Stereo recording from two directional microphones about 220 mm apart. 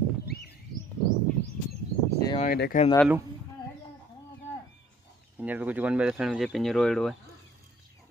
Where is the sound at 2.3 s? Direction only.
40° left (ahead or behind).